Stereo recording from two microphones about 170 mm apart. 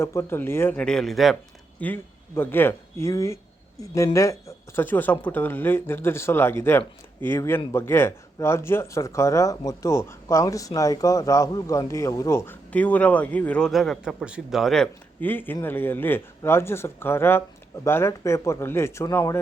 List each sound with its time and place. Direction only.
0.0 s speech: 15° left (ahead or behind); by 1.4 s centre (ahead or behind)
1.8 s speech: 10° left (ahead or behind)